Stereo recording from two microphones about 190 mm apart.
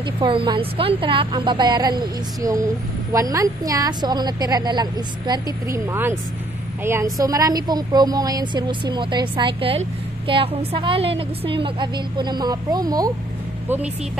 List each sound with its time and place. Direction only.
0.2 s a woman's voice: 25° right (ahead or behind)